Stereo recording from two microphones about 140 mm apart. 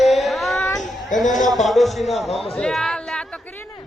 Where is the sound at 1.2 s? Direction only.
65° left (ahead or behind).